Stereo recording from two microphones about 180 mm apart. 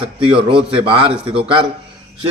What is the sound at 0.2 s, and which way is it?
A man's voice, 30° right (ahead or behind).